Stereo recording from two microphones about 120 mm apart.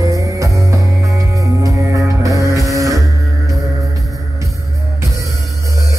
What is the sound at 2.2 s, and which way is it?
Music, 30° right (ahead or behind).